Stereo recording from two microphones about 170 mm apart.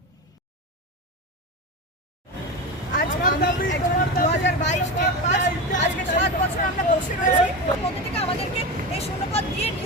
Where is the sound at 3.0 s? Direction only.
55° left (ahead or behind).